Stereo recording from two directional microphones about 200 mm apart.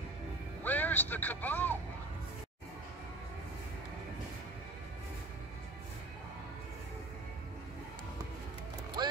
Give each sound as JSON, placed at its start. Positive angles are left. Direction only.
{"t": 0.7, "sound": "speech", "side_deg": 10}